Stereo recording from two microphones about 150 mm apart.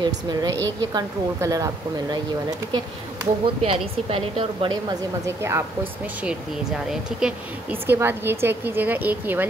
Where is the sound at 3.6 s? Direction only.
40° right (ahead or behind).